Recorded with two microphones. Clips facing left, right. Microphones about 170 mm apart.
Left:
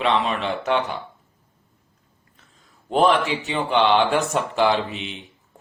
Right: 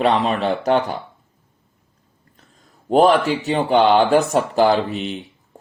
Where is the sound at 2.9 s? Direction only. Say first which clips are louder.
Right 4 dB; 45° right (ahead or behind).